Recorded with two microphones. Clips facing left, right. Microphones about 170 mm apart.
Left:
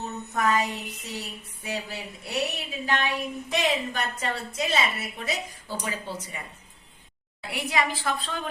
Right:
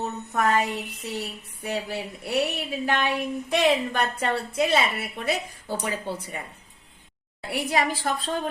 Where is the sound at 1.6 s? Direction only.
55° right (ahead or behind).